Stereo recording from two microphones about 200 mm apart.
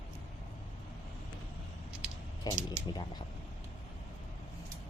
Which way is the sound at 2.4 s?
20° left (ahead or behind).